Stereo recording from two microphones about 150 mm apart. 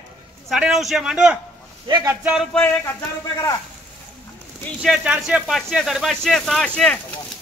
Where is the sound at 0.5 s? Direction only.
5° right (ahead or behind).